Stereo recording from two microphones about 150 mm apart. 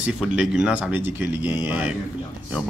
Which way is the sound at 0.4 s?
5° right (ahead or behind).